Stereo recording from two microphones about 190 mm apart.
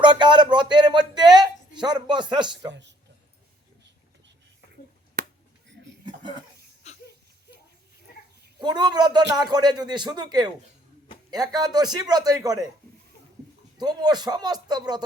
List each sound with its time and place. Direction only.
0.0 s speech: 25° right (ahead or behind)
6.8 s a sound: 35° left (ahead or behind)
8.6 s speech: 20° right (ahead or behind)
13.7 s speech: 20° right (ahead or behind)